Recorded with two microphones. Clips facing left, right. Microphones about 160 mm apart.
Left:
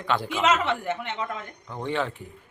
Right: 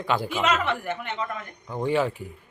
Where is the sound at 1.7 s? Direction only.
5° right (ahead or behind).